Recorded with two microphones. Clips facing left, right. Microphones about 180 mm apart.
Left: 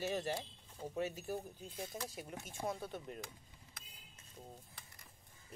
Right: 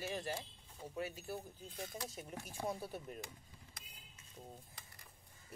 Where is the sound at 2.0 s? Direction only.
Centre (ahead or behind).